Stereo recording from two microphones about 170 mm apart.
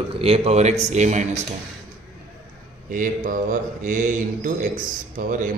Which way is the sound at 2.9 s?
50° right (ahead or behind).